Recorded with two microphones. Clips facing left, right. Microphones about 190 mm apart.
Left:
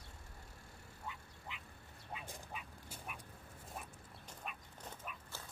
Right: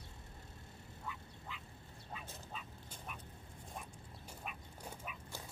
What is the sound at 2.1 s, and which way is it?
Dog, 15° left (ahead or behind).